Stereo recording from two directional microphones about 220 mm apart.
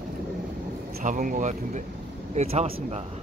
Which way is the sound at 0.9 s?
35° right (ahead or behind).